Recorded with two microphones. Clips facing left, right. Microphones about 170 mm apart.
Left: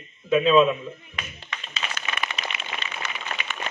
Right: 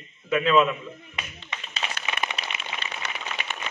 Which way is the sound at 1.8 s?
20° right (ahead or behind).